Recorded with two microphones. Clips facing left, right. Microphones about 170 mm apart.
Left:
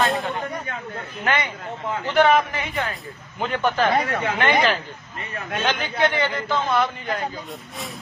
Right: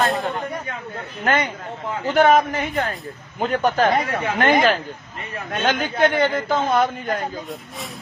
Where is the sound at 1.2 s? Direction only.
40° right (ahead or behind).